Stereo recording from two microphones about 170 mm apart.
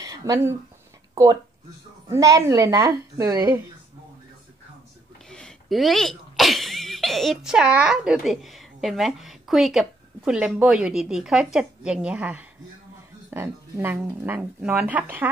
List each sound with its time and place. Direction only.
0.0 s a woman's voice: 20° right (ahead or behind)
5.3 s speech: centre (ahead or behind)